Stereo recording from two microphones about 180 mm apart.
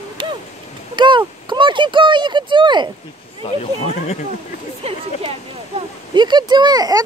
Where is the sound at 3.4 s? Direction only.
35° left (ahead or behind).